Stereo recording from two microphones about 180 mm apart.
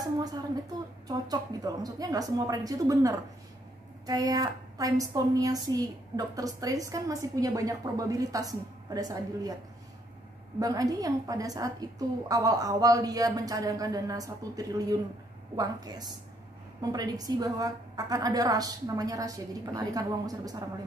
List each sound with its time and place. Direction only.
0.0 s a woman's voice: 20° right (ahead or behind)
10.6 s a woman's voice: 20° right (ahead or behind)